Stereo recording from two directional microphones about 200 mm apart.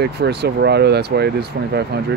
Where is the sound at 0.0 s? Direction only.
55° right (ahead or behind).